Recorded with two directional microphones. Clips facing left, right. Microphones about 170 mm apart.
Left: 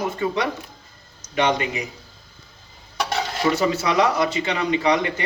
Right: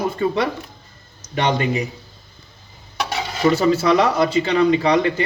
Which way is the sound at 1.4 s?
35° right (ahead or behind).